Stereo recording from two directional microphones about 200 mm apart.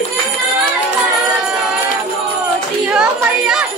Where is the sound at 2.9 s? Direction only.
5° right (ahead or behind).